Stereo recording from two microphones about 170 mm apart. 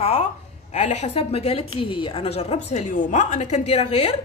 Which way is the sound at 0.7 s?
40° left (ahead or behind).